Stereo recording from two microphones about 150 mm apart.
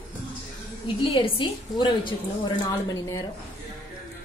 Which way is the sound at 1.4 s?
30° left (ahead or behind).